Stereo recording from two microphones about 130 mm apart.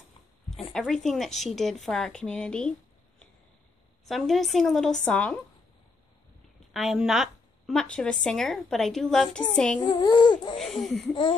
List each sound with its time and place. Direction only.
0.5 s a woman's voice: 5° left (ahead or behind)
4.0 s a woman's voice: centre (ahead or behind)
6.7 s a woman's voice: 5° right (ahead or behind)
9.8 s speech: 35° left (ahead or behind)
10.6 s a woman's voice: centre (ahead or behind)